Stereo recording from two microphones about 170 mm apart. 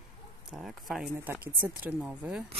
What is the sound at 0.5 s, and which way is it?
Speech, centre (ahead or behind).